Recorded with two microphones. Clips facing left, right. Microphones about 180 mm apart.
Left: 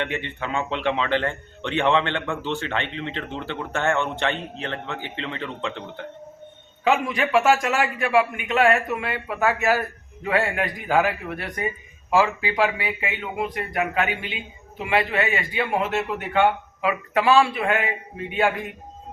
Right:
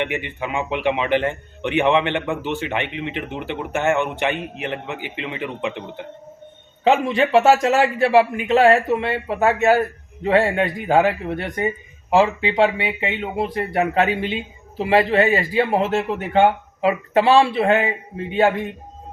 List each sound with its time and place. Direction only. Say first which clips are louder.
0.0 s a man's voice: right 3 dB; 15° right (ahead or behind)
6.8 s speech: right 5 dB; 30° right (ahead or behind)